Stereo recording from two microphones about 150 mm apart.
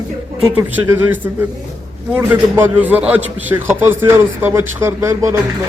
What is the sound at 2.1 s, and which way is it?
A man's voice, 10° right (ahead or behind).